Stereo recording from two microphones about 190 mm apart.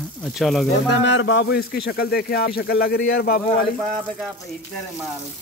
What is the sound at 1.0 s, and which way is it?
Speech, 70° left (ahead or behind).